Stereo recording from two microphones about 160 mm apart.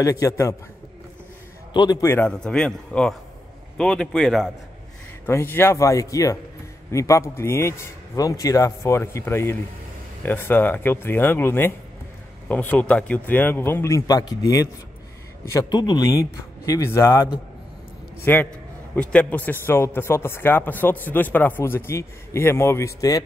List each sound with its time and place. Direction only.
0.0 s speech: 20° left (ahead or behind)
1.7 s a man's voice: 25° left (ahead or behind); by 4.5 s centre (ahead or behind)
5.2 s speech: 15° left (ahead or behind)